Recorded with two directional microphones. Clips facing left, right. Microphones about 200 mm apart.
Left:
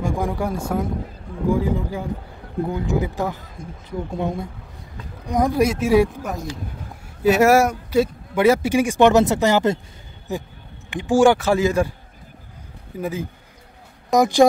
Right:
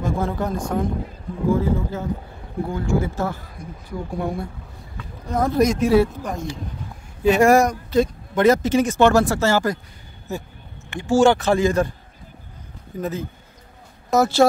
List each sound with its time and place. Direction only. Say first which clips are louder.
0.0 s speech: even; 15° left (ahead or behind)
12.9 s speech: even; 10° left (ahead or behind)